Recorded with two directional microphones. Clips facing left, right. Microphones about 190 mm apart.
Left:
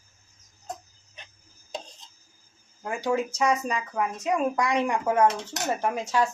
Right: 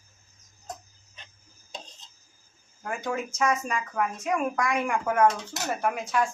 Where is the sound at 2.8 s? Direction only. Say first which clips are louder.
Left 4 dB; 30° left (ahead or behind).